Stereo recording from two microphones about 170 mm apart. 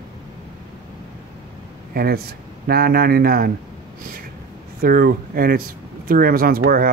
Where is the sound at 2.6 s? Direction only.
65° right (ahead or behind).